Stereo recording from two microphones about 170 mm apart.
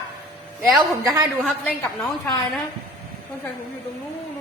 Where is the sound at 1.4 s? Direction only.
10° left (ahead or behind).